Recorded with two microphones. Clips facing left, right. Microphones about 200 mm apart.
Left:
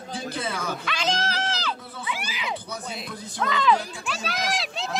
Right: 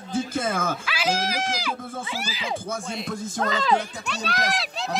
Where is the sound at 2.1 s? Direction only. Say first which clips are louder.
Left 1 dB; 40° right (ahead or behind).